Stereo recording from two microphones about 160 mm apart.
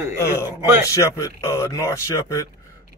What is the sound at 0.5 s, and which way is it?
Speech, 15° right (ahead or behind).